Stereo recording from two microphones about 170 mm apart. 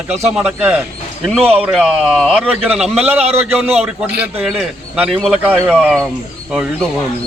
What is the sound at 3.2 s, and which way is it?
Speech, 40° right (ahead or behind).